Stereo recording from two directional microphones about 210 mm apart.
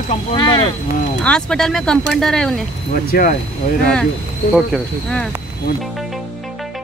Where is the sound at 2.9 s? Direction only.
40° left (ahead or behind).